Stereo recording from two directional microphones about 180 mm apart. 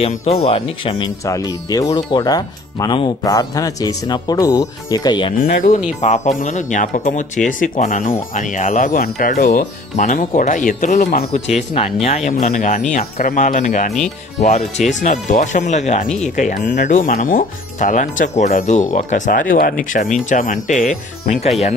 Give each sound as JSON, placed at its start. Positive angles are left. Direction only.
{"t": 0.0, "sound": "speech", "side_deg": 35}
{"t": 5.4, "sound": "speech", "side_deg": 50}